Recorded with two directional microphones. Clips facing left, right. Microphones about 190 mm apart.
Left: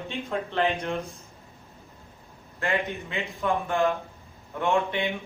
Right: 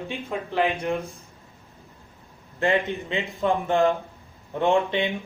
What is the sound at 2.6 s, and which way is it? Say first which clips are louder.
A man's voice: right 5 dB; 20° right (ahead or behind).